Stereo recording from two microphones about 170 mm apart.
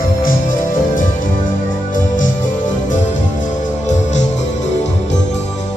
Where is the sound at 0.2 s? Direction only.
55° left (ahead or behind).